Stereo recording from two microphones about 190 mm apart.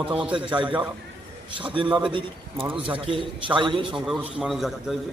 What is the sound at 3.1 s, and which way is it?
Speech, 25° right (ahead or behind).